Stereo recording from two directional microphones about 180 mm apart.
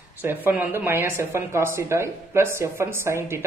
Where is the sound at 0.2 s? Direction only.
10° right (ahead or behind).